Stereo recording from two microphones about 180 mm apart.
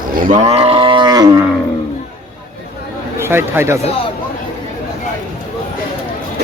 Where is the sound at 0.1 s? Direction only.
50° right (ahead or behind); by 1.5 s 20° right (ahead or behind).